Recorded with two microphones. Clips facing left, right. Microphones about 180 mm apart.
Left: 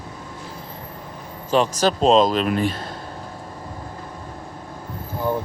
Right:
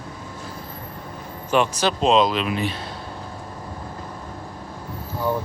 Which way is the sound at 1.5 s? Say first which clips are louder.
Left 2 dB; 40° left (ahead or behind).